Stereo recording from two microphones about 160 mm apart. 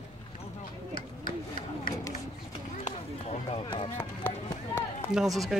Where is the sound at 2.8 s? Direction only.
45° left (ahead or behind).